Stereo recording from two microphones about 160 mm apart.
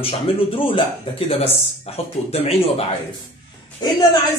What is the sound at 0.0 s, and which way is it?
Speech, 35° left (ahead or behind).